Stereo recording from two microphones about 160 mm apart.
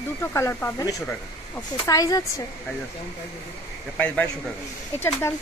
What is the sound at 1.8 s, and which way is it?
Speech, 20° left (ahead or behind).